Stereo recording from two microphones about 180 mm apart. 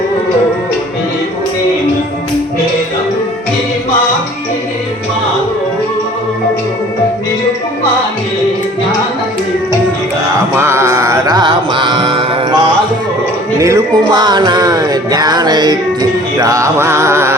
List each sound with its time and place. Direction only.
10.6 s music: 15° right (ahead or behind)
13.6 s music: 15° right (ahead or behind)